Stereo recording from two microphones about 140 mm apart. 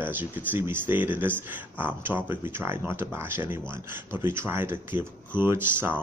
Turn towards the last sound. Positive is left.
turn(degrees=-15)  # may be behind; listen again after turning